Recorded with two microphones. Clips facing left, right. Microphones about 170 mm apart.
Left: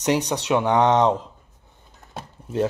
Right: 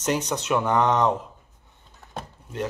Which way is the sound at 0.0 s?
70° left (ahead or behind).